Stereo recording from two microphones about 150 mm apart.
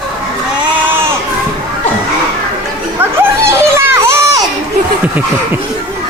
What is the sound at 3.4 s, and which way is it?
Children playing, 20° right (ahead or behind).